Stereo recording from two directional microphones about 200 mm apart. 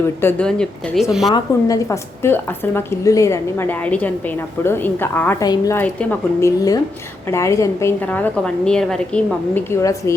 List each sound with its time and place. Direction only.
0.2 s speech: 10° left (ahead or behind)
1.3 s a woman's voice: 20° left (ahead or behind)